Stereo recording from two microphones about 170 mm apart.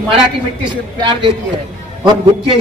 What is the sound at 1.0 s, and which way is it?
Speech, 30° right (ahead or behind).